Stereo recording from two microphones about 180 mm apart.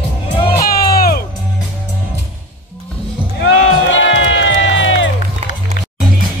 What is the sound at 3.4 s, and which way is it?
Music, 90° left.